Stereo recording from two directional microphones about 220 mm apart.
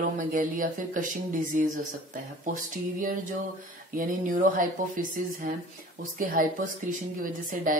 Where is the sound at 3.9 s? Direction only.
40° right (ahead or behind).